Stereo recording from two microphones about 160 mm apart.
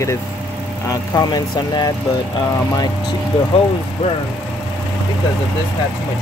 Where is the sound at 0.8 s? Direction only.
25° left (ahead or behind).